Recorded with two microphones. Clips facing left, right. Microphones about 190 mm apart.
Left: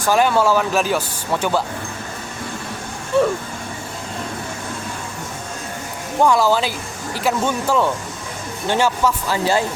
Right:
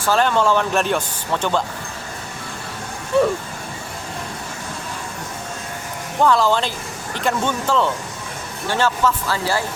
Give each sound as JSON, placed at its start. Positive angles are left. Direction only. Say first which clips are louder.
{"t": 0.0, "sound": "speech", "louder": "left 2 dB", "side_deg": 10}
{"t": 3.1, "sound": "speech", "louder": "even", "side_deg": 0}
{"t": 6.1, "sound": "speech", "louder": "left 1 dB", "side_deg": 10}